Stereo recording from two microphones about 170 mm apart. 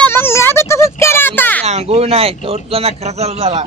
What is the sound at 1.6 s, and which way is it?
Speech, 40° right (ahead or behind).